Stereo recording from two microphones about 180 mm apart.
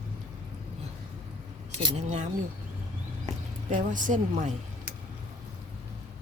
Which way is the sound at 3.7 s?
45° right (ahead or behind).